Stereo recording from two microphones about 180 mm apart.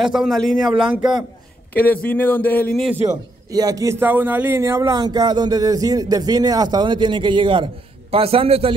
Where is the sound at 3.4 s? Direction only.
20° right (ahead or behind).